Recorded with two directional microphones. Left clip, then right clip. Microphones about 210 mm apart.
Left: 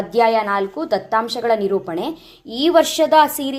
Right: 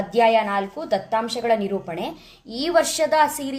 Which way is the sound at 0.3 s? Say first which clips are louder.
Left 2 dB; 20° left (ahead or behind).